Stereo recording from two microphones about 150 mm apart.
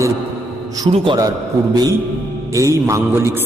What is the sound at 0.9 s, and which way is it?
A man's voice, 35° right (ahead or behind).